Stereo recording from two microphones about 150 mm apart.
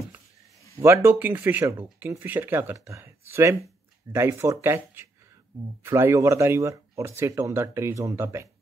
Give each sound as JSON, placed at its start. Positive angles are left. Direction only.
{"t": 0.8, "sound": "speech", "side_deg": -15}